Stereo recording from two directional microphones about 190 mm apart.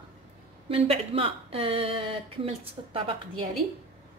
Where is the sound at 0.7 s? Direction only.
30° right (ahead or behind).